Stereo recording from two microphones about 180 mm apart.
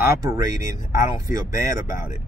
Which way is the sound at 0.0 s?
15° right (ahead or behind).